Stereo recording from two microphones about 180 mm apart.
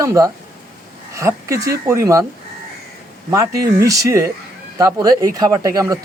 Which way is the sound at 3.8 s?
15° right (ahead or behind).